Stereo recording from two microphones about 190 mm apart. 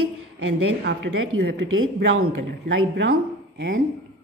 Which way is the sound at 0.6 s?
80° right.